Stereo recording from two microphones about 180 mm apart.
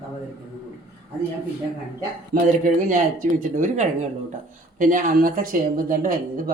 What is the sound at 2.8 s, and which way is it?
Speech, 45° right (ahead or behind).